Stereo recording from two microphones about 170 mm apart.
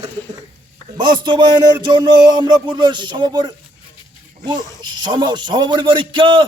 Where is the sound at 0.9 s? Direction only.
25° right (ahead or behind).